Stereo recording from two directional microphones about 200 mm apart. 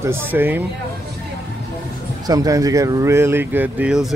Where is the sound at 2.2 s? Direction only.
15° right (ahead or behind).